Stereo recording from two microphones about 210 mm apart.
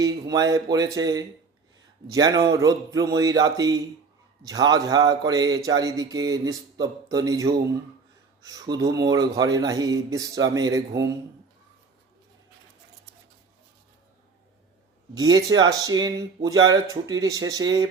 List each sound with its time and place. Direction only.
0.0 s a man's voice: 15° right (ahead or behind)
15.2 s a man's voice: 20° right (ahead or behind)